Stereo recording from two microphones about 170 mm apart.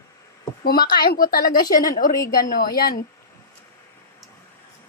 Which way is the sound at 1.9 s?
55° left (ahead or behind).